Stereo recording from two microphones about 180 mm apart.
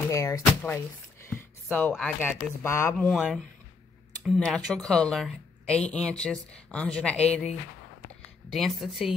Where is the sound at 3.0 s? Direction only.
Centre (ahead or behind).